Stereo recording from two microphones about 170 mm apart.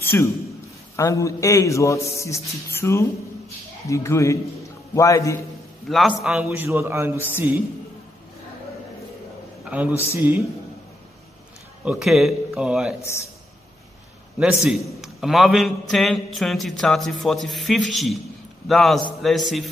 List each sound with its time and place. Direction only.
0.0 s a man's voice: 15° left (ahead or behind)
5.9 s a man's voice: centre (ahead or behind)
9.7 s a man's voice: 10° right (ahead or behind)
11.8 s a man's voice: 5° right (ahead or behind)
14.4 s a man's voice: 5° right (ahead or behind)